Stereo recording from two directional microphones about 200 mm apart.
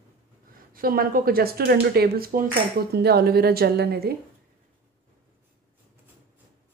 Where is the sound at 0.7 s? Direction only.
45° right (ahead or behind).